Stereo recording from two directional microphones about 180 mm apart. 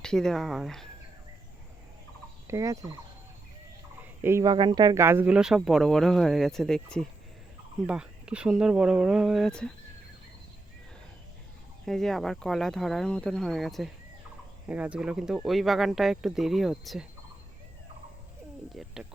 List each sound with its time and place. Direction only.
0.0 s speech: 5° left (ahead or behind)
2.5 s fowl: 15° right (ahead or behind)
4.0 s fowl: 15° right (ahead or behind)
4.5 s speech: 25° right (ahead or behind); by 6.8 s centre (ahead or behind)
7.9 s speech: 5° right (ahead or behind)
11.9 s speech: centre (ahead or behind)
18.7 s speech: centre (ahead or behind)